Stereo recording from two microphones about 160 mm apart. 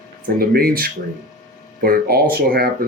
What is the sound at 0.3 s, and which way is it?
Speech, 70° right (ahead or behind).